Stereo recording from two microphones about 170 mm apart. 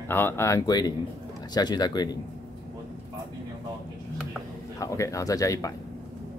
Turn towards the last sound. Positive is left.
turn(degrees=20)  # may be behind; listen again after turning